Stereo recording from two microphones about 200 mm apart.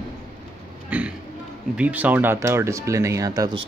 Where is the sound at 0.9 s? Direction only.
5° right (ahead or behind).